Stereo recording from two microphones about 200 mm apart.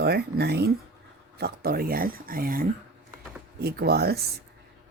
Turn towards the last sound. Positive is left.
turn(degrees=-50)  # may be behind; listen again after turning